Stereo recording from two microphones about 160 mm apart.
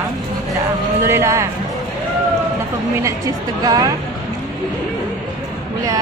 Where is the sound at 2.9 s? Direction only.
20° right (ahead or behind).